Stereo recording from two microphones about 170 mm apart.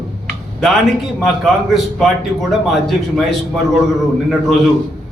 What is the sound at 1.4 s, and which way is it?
A man's voice, centre (ahead or behind).